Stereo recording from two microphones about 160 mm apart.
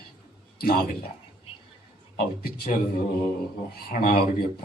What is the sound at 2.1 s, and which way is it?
Speech, 70° left (ahead or behind).